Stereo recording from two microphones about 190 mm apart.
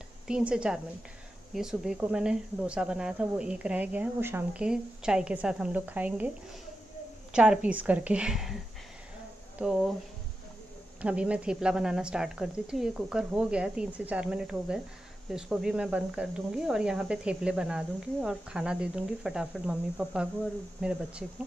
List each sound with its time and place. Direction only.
0.3 s speech: 5° right (ahead or behind)
7.3 s speech: 5° right (ahead or behind)
9.6 s speech: centre (ahead or behind)
11.0 s speech: 5° right (ahead or behind)